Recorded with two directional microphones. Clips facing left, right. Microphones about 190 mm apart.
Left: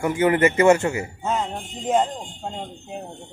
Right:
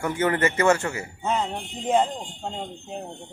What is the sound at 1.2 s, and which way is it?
Speech, centre (ahead or behind).